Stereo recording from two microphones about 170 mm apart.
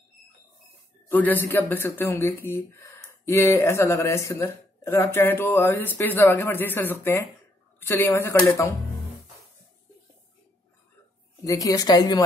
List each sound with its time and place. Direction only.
1.0 s speech: 10° left (ahead or behind)
11.4 s a woman's voice: 20° left (ahead or behind)